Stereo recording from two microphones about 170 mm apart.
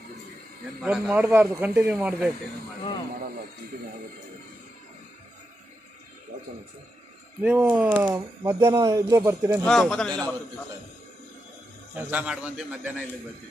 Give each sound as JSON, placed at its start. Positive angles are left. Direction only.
{"t": 0.8, "sound": "speech", "side_deg": -10}
{"t": 7.4, "sound": "speech", "side_deg": -10}
{"t": 9.7, "sound": "a man's voice", "side_deg": 5}
{"t": 11.9, "sound": "speech", "side_deg": -10}